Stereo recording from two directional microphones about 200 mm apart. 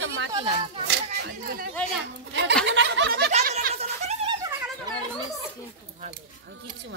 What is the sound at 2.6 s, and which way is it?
Snicker, 65° right (ahead or behind).